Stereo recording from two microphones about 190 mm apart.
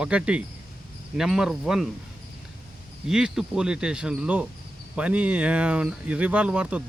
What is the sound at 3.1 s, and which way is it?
Speech, 5° right (ahead or behind).